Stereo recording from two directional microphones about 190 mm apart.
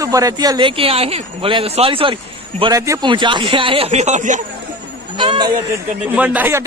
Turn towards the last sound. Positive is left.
turn(degrees=-10)  # may be behind; listen again after turning